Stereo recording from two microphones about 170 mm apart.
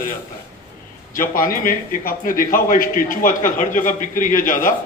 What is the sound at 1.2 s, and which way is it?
A man's voice, 55° left (ahead or behind).